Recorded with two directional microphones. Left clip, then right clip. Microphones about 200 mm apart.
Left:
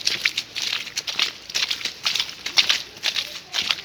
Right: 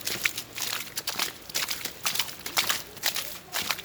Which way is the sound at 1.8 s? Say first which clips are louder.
Left 7 dB; 5° right (ahead or behind).